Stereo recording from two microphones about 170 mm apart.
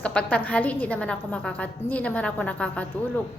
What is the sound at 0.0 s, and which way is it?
A woman's voice, 5° left (ahead or behind).